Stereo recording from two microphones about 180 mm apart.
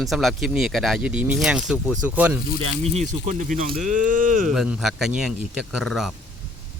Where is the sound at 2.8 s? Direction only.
35° right (ahead or behind).